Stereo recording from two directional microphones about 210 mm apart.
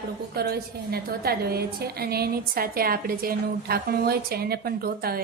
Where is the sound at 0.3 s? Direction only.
50° right (ahead or behind).